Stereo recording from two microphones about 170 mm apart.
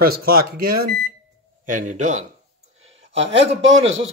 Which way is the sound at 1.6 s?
50° right (ahead or behind).